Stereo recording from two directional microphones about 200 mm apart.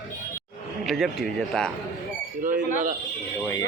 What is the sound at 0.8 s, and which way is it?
Speech, centre (ahead or behind).